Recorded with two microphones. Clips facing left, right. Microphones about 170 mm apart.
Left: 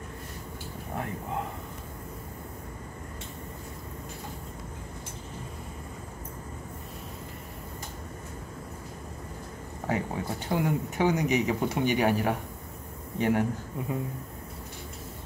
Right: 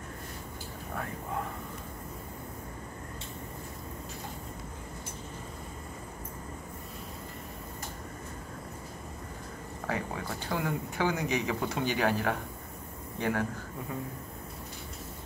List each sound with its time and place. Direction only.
9.8 s speech: 20° left (ahead or behind)